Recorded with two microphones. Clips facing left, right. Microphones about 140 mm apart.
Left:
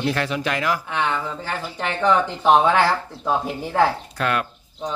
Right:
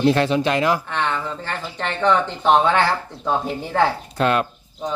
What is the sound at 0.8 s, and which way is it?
Speech, 5° left (ahead or behind).